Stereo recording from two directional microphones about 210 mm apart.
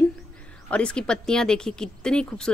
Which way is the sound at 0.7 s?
5° left (ahead or behind).